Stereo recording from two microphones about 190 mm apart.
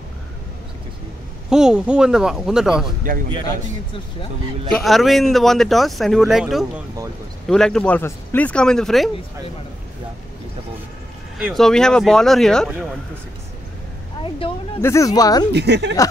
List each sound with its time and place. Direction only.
1.5 s speech: 5° right (ahead or behind)
4.7 s speech: centre (ahead or behind)
11.3 s speech: centre (ahead or behind)
14.4 s speech: 25° left (ahead or behind)
14.8 s speech: 15° left (ahead or behind)
15.5 s a woman's voice: 65° right (ahead or behind)